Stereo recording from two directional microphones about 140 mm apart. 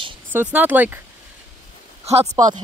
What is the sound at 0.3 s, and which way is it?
Speech, 15° right (ahead or behind).